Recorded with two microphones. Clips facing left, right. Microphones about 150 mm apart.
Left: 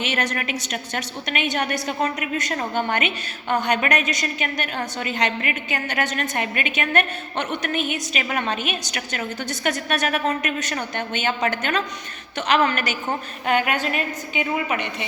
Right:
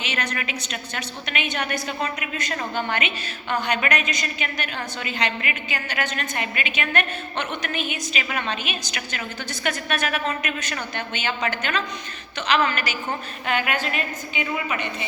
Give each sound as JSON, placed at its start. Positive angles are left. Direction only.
{"t": 0.0, "sound": "a woman's voice", "side_deg": 50}